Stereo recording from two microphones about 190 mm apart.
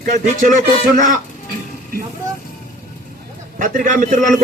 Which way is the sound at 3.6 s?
45° right (ahead or behind).